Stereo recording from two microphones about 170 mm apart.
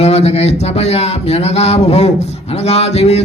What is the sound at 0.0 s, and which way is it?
Speech, 40° left (ahead or behind).